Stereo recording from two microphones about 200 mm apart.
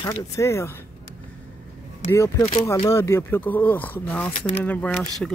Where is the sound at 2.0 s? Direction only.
15° left (ahead or behind).